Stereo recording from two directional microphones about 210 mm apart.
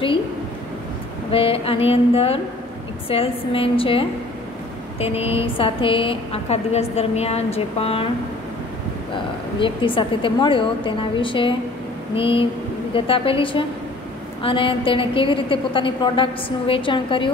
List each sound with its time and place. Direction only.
1.3 s a woman's voice: 25° left (ahead or behind)
5.0 s a woman's voice: 30° left (ahead or behind)
9.6 s a woman's voice: 25° left (ahead or behind)